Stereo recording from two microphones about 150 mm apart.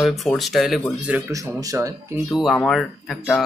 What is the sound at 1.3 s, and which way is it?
Speech, 20° right (ahead or behind).